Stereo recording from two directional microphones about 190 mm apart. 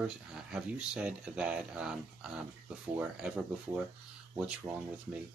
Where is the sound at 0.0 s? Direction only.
5° right (ahead or behind).